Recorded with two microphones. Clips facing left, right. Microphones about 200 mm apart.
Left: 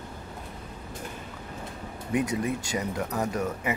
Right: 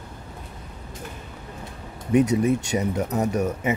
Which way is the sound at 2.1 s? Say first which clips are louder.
Right 8 dB; 25° right (ahead or behind).